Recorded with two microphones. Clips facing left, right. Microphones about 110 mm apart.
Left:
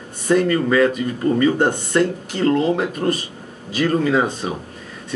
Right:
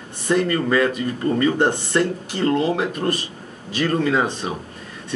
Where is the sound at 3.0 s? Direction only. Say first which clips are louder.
Left 3 dB; 5° right (ahead or behind).